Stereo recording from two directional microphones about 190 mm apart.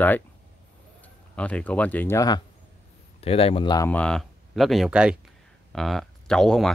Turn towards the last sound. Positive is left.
turn(degrees=5)  # may be behind; listen again after turning